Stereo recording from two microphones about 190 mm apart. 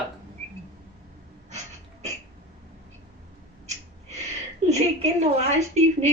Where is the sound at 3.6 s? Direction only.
35° right (ahead or behind).